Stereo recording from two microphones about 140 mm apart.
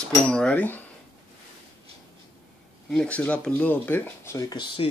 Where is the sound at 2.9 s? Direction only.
10° left (ahead or behind).